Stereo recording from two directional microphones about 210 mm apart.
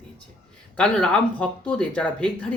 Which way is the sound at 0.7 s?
5° left (ahead or behind).